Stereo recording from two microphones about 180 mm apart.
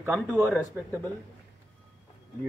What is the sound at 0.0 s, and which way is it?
Speech, 10° right (ahead or behind).